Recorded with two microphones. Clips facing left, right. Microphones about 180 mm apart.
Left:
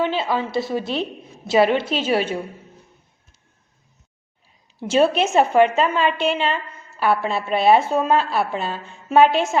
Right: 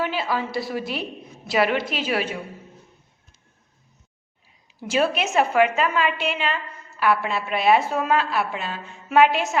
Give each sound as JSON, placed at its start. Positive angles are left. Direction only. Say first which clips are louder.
{"t": 0.0, "sound": "a woman's voice", "louder": "left 3 dB", "side_deg": 25}
{"t": 4.8, "sound": "a woman's voice", "louder": "left 5 dB", "side_deg": 25}